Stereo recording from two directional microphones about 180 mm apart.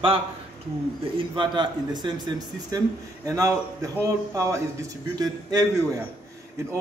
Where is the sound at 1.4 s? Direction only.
25° right (ahead or behind).